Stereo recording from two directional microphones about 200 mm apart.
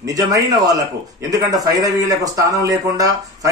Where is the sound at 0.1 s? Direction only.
15° right (ahead or behind).